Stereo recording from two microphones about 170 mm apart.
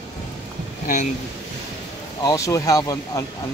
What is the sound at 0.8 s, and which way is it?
Speech, 45° left (ahead or behind).